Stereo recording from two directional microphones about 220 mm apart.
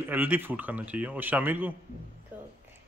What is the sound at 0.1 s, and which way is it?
A man's voice, 10° right (ahead or behind).